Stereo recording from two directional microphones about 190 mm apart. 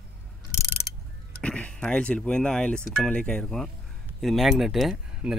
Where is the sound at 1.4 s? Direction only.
5° left (ahead or behind).